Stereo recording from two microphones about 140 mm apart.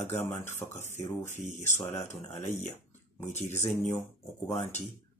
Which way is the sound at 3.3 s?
55° left (ahead or behind).